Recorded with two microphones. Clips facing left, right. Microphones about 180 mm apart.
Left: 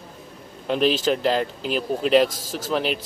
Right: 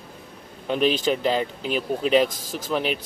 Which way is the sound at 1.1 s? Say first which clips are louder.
Left 1 dB; centre (ahead or behind).